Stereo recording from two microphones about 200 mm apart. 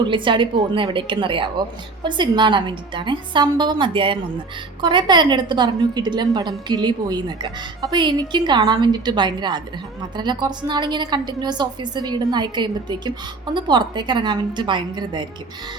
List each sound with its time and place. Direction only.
0.1 s a woman's voice: 25° right (ahead or behind)